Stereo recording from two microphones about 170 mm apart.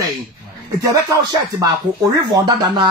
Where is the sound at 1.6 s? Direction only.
20° right (ahead or behind).